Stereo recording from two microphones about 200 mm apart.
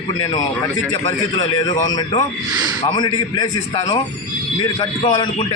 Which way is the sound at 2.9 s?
20° left (ahead or behind).